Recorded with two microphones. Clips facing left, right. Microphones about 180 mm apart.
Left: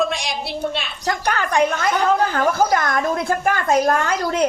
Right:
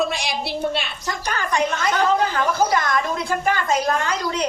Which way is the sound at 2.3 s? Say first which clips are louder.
Left 2 dB; 50° left (ahead or behind).